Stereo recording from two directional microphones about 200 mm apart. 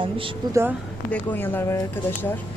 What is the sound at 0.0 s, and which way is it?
Speech, 25° right (ahead or behind).